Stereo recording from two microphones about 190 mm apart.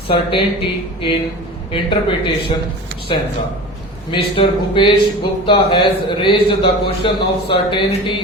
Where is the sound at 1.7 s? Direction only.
25° left (ahead or behind).